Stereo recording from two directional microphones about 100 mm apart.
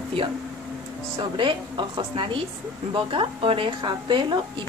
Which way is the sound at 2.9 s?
65° right (ahead or behind).